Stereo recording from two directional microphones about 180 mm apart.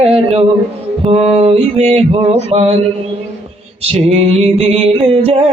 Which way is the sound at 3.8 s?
35° right (ahead or behind).